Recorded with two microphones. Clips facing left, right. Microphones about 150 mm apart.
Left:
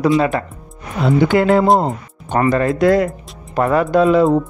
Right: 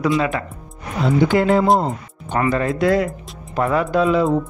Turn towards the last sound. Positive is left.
turn(degrees=45)  # may be behind; listen again after turning